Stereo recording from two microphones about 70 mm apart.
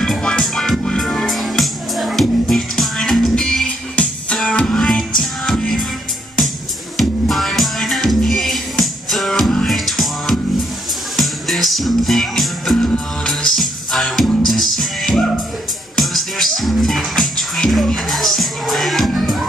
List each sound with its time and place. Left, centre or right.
0.0 s music: centre
3.9 s music: centre
4.6 s music: centre
7.0 s music: centre
12.7 s music: centre
13.6 s music: centre